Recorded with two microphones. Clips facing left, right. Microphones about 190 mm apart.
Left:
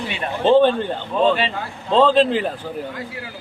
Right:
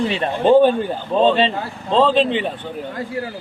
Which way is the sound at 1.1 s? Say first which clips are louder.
Right 3 dB; 25° right (ahead or behind).